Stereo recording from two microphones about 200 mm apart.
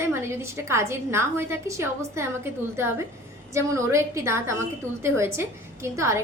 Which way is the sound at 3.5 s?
15° right (ahead or behind).